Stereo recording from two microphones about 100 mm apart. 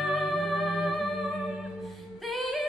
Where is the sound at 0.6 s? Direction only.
15° right (ahead or behind).